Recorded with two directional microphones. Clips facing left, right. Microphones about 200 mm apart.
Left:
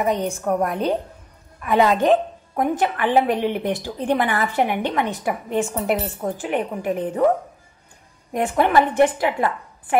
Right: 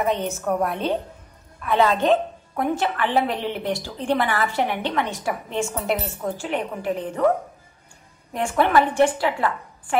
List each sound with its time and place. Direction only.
0.0 s a woman's voice: 15° left (ahead or behind)
8.3 s a woman's voice: 15° left (ahead or behind)